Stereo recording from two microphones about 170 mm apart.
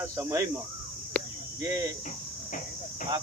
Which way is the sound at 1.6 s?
20° right (ahead or behind).